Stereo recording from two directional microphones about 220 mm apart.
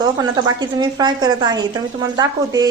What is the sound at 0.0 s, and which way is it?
Speech, 20° right (ahead or behind).